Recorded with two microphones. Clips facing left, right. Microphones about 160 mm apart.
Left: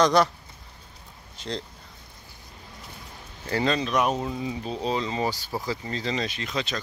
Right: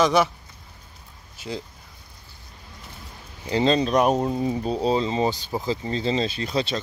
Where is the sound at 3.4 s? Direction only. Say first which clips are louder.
Right 5 dB; 25° right (ahead or behind).